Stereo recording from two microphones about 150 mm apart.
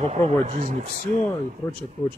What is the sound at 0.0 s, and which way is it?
Speech, 50° right (ahead or behind).